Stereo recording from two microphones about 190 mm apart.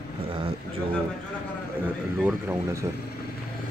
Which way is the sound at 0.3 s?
30° right (ahead or behind).